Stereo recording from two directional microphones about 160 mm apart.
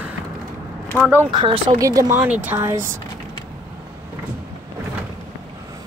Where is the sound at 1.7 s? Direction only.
20° right (ahead or behind).